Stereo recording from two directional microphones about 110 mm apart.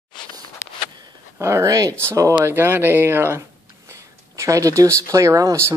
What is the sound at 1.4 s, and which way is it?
Speech, 25° right (ahead or behind).